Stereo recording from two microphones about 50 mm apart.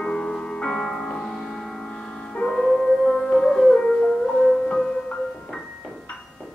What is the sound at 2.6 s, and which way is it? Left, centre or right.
Music, centre.